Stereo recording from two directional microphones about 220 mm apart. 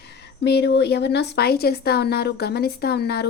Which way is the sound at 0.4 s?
50° left (ahead or behind).